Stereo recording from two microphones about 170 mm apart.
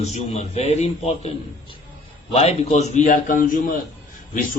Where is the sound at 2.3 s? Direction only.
35° left (ahead or behind).